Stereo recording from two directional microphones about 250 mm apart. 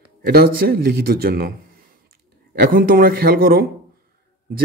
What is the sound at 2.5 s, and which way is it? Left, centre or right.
Speech, right.